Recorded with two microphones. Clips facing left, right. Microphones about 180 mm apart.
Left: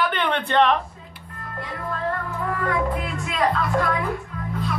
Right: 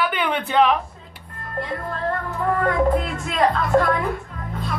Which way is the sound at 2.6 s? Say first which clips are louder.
Right 5 dB; 45° right (ahead or behind).